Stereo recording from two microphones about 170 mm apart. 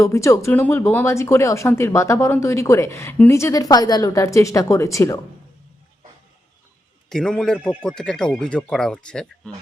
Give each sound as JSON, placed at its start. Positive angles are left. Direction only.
{"t": 0.0, "sound": "speech", "side_deg": 15}
{"t": 7.1, "sound": "speech", "side_deg": 5}